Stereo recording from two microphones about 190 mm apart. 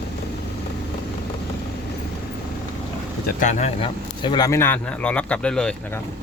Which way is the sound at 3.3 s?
40° left (ahead or behind).